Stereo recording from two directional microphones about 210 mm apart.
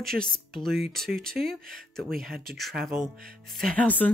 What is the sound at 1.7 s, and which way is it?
Speech, centre (ahead or behind).